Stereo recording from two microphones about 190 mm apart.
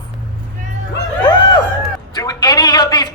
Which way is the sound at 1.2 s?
25° left (ahead or behind).